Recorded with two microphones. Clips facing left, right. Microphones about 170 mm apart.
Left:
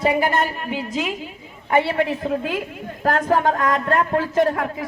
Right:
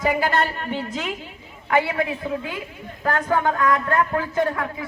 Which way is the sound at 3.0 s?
40° left (ahead or behind).